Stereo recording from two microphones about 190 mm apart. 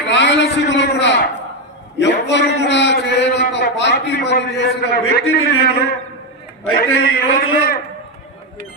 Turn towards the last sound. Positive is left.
turn(degrees=50)  # may be behind; listen again after turning